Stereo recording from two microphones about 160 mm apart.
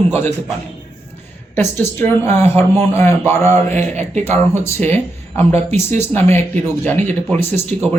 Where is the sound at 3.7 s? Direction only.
45° right (ahead or behind).